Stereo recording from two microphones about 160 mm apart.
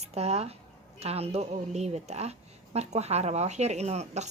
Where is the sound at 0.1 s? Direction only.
40° right (ahead or behind).